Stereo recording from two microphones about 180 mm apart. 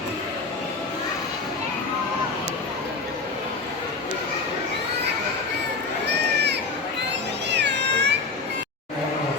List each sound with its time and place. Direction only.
6.3 s crowd: 70° right (ahead or behind)
7.5 s cat: 75° right (ahead or behind)